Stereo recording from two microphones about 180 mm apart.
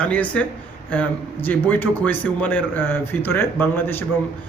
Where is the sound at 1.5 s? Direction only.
10° left (ahead or behind).